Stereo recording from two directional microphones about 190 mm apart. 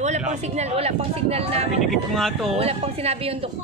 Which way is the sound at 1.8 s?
Centre (ahead or behind).